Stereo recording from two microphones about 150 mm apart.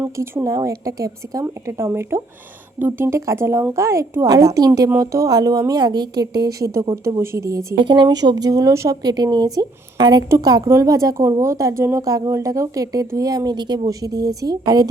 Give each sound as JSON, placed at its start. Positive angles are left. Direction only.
{"t": 0.0, "sound": "a woman's voice", "side_deg": -15}
{"t": 7.8, "sound": "a woman's voice", "side_deg": -30}